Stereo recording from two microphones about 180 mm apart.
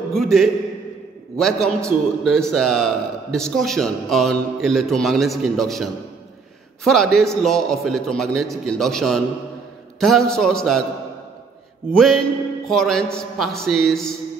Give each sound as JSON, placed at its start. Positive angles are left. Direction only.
{"t": 0.1, "sound": "a man's voice", "side_deg": 0}
{"t": 11.9, "sound": "a man's voice", "side_deg": 5}